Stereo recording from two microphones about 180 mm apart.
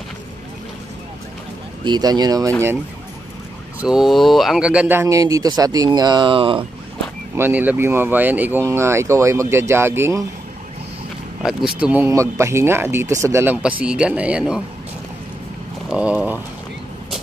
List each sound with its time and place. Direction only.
1.9 s speech: 20° right (ahead or behind)
3.8 s speech: centre (ahead or behind); by 6.6 s 30° right (ahead or behind)
7.3 s speech: 10° right (ahead or behind)
11.4 s speech: 5° right (ahead or behind)
15.9 s speech: 5° right (ahead or behind)